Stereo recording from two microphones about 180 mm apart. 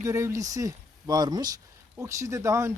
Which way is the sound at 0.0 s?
15° right (ahead or behind).